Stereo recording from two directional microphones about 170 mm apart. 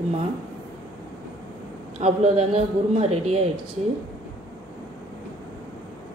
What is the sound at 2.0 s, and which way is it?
A man's voice, 40° right (ahead or behind).